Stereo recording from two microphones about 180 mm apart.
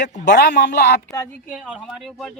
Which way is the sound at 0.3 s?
75° left (ahead or behind).